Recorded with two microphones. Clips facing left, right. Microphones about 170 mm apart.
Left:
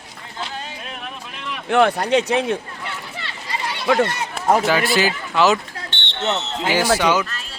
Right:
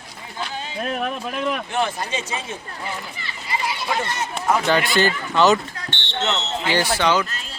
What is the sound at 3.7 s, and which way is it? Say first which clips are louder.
Speech: left 7 dB; 65° left (ahead or behind).